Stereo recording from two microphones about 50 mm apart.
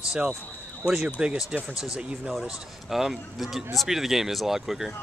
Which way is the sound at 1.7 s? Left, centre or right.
Centre.